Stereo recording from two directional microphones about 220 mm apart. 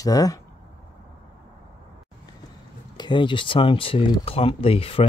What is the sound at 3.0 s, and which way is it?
Speech, 20° left (ahead or behind).